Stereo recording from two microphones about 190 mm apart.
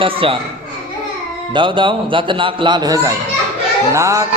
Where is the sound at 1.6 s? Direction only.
25° right (ahead or behind).